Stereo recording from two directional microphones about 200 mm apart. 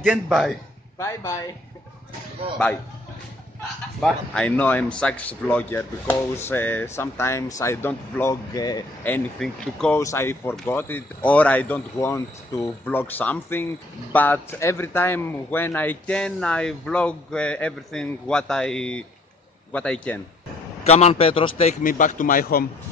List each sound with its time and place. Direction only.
0.0 s a man's voice: 5° right (ahead or behind)
0.9 s speech: 15° left (ahead or behind)
4.0 s speech: 5° left (ahead or behind)
9.0 s a man's voice: 5° left (ahead or behind)
20.8 s speech: 30° left (ahead or behind)
21.8 s speech: 40° left (ahead or behind)